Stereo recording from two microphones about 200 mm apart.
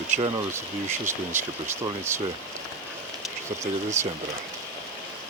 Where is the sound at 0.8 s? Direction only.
10° right (ahead or behind).